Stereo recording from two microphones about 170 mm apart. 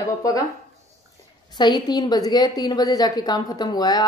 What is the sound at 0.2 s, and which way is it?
Speech, 20° left (ahead or behind).